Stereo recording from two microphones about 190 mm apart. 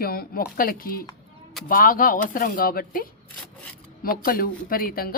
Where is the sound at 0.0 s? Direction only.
55° left (ahead or behind).